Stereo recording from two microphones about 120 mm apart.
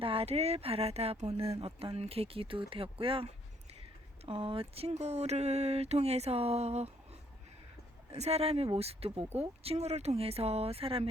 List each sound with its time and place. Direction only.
0.0 s speech: 50° right (ahead or behind)
8.1 s speech: 65° right (ahead or behind)